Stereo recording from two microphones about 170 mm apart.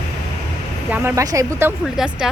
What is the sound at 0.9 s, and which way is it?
Speech, 15° right (ahead or behind).